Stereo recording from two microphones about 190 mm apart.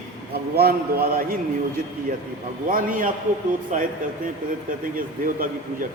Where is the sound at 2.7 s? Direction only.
45° right (ahead or behind).